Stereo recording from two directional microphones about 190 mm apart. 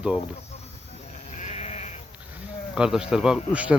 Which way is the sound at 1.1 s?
35° left (ahead or behind).